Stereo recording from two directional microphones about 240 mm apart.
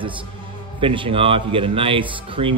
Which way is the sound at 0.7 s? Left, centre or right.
Right.